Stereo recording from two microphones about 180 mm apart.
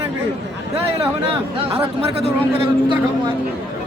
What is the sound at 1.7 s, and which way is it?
Speech, 30° right (ahead or behind).